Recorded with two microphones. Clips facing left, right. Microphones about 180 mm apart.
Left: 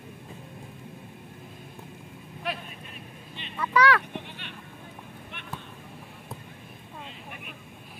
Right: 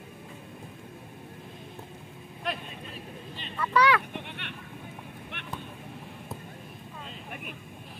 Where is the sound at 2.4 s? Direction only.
5° left (ahead or behind).